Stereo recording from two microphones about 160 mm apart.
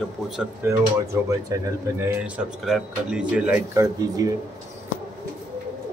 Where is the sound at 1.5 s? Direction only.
15° right (ahead or behind).